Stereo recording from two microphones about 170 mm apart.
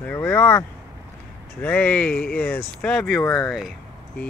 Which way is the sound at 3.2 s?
15° left (ahead or behind).